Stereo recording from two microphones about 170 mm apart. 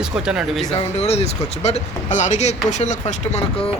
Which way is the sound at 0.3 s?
Centre (ahead or behind).